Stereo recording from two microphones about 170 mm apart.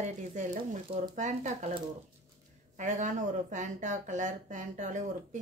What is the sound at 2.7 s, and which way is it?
Speech, 45° right (ahead or behind).